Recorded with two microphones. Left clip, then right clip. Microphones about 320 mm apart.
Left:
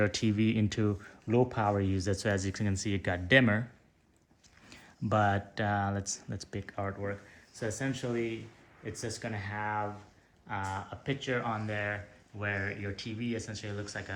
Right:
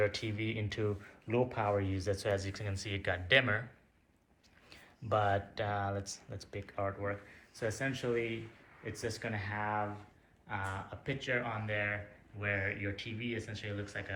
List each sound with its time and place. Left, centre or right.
0.0 s speech: left
4.7 s speech: left; by 14.0 s centre